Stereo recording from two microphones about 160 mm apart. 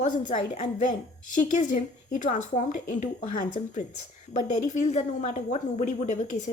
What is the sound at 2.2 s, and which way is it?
Speech, 50° left (ahead or behind).